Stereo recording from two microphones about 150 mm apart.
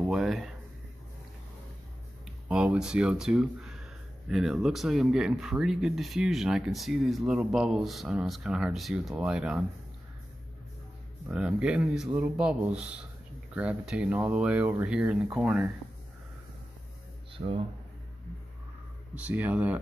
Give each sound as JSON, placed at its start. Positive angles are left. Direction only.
{"t": 0.0, "sound": "speech", "side_deg": 0}
{"t": 2.4, "sound": "speech", "side_deg": -5}
{"t": 11.2, "sound": "speech", "side_deg": -5}
{"t": 17.3, "sound": "speech", "side_deg": -35}
{"t": 19.1, "sound": "speech", "side_deg": -10}